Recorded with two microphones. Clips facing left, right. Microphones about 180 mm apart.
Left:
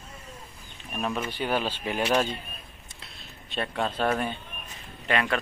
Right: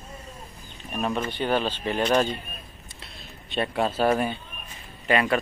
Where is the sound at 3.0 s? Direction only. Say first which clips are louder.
Right 3 dB; centre (ahead or behind).